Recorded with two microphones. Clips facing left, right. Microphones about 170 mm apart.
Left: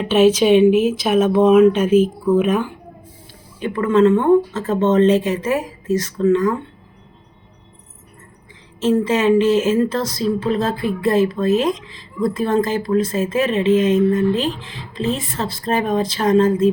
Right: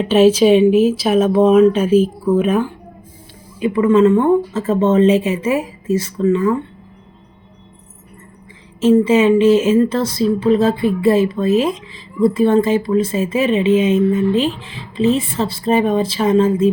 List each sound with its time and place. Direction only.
0.1 s speech: 35° right (ahead or behind)
1.3 s speech: centre (ahead or behind)
8.8 s speech: centre (ahead or behind)